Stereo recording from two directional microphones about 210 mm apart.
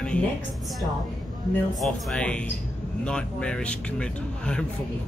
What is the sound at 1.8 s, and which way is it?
Speech, centre (ahead or behind).